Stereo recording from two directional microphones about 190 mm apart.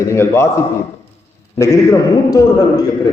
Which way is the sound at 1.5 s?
15° left (ahead or behind).